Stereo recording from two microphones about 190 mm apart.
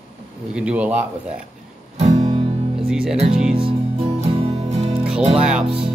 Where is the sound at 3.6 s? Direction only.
30° right (ahead or behind).